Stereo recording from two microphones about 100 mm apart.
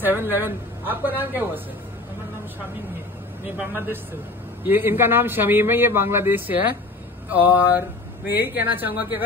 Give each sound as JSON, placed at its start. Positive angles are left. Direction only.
{"t": 0.0, "sound": "a man's voice", "side_deg": -20}
{"t": 3.4, "sound": "a man's voice", "side_deg": -20}
{"t": 7.2, "sound": "a sound", "side_deg": -20}
{"t": 8.3, "sound": "a man's voice", "side_deg": -20}